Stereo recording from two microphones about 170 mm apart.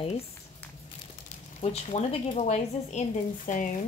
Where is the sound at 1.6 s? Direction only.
40° left (ahead or behind).